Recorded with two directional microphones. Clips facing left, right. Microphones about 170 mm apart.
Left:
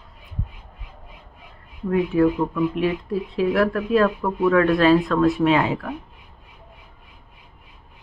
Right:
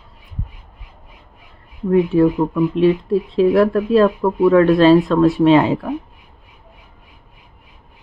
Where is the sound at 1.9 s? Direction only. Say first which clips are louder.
Right 5 dB; 30° right (ahead or behind).